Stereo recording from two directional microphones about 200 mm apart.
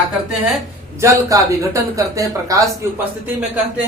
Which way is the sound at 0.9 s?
15° right (ahead or behind).